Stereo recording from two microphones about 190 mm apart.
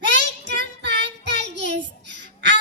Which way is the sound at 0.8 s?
65° right (ahead or behind).